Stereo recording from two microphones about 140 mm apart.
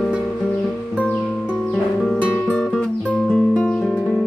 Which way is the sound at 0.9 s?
10° left (ahead or behind).